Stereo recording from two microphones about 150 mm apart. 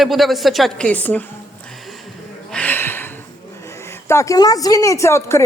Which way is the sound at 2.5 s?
10° left (ahead or behind).